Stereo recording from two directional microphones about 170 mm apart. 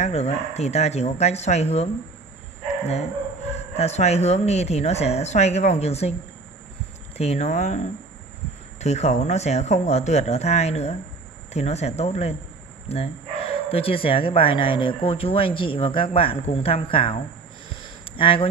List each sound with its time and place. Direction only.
0.0 s speech: 40° left (ahead or behind)
3.5 s speech: 40° left (ahead or behind)
7.2 s speech: 40° left (ahead or behind)